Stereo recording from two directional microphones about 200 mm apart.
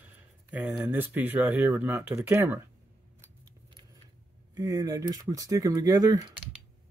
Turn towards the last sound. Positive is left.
turn(degrees=-20)  # may be behind; listen again after turning